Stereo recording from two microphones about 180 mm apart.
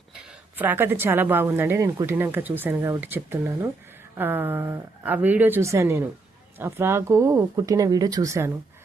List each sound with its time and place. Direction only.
0.5 s a woman's voice: 10° right (ahead or behind)